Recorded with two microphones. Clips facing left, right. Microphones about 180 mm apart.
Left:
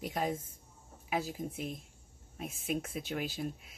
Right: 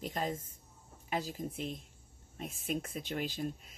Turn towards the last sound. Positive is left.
turn(degrees=5)  # may be behind; listen again after turning